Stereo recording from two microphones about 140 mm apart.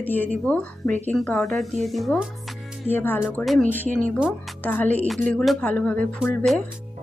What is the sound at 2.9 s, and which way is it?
A woman's voice, 15° left (ahead or behind).